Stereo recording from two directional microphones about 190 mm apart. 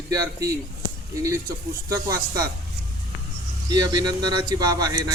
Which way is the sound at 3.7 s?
20° right (ahead or behind).